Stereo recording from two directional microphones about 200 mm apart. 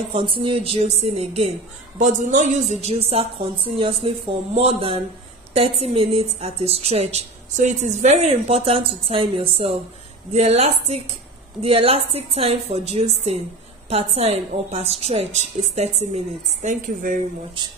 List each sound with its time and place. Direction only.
0.1 s a woman's voice: 25° right (ahead or behind); by 17.2 s 40° right (ahead or behind)